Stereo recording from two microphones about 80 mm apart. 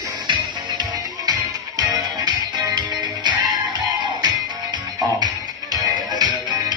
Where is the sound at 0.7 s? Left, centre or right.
Right.